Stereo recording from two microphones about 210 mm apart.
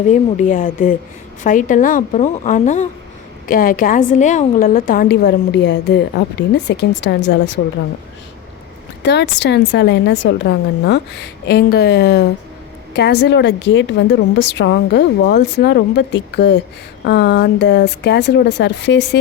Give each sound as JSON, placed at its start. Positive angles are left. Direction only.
{"t": 0.1, "sound": "a woman's voice", "side_deg": 35}
{"t": 9.0, "sound": "a woman's voice", "side_deg": 55}